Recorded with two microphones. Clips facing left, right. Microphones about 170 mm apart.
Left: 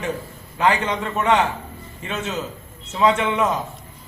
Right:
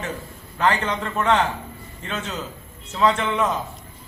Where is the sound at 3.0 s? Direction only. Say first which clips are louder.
Left 2 dB; 10° left (ahead or behind).